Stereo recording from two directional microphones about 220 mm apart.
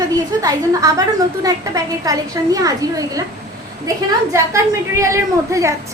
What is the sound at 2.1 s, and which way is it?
A woman's voice, 15° right (ahead or behind).